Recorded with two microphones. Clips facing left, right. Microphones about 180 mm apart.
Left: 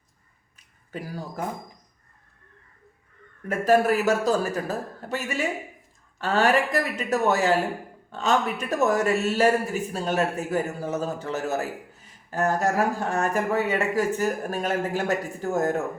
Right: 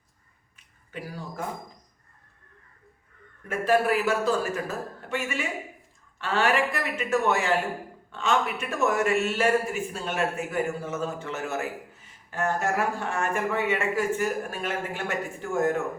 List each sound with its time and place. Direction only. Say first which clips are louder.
0.9 s a man's voice: left 2 dB; 40° left (ahead or behind)
3.6 s a man's voice: left 3 dB; 45° left (ahead or behind)